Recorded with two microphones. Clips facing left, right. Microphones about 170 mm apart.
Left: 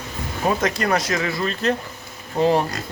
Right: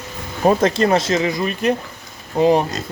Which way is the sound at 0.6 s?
30° right (ahead or behind).